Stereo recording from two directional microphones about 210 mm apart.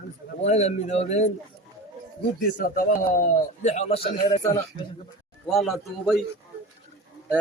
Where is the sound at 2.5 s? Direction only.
40° left (ahead or behind).